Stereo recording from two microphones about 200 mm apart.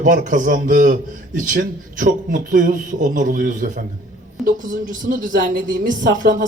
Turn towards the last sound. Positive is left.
turn(degrees=-40)  # may be behind; listen again after turning